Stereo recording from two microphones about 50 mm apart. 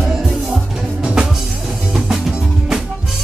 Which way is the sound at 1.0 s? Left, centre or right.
Centre.